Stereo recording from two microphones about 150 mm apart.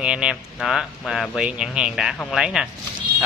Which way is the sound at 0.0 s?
5° right (ahead or behind).